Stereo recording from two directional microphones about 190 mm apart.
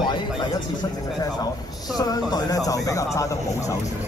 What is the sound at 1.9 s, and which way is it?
A man's voice, 20° left (ahead or behind).